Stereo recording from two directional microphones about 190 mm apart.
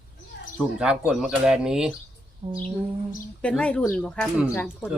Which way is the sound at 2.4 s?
25° right (ahead or behind).